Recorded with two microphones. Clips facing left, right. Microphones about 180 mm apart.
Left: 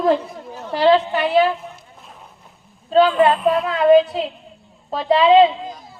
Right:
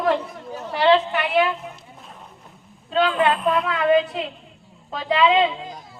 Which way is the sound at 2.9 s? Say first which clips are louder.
Left 6 dB; 40° left (ahead or behind).